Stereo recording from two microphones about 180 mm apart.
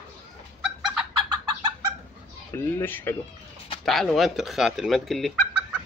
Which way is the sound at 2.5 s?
10° left (ahead or behind).